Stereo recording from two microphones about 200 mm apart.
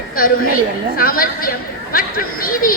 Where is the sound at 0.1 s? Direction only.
45° left (ahead or behind).